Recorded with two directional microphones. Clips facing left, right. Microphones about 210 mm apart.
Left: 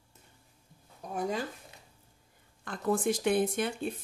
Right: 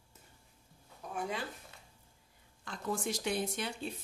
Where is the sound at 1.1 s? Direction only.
40° left (ahead or behind).